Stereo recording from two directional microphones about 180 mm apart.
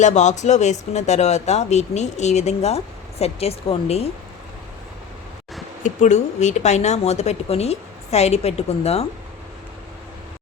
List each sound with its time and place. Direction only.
0.0 s speech: 40° left (ahead or behind)
5.8 s speech: 40° left (ahead or behind)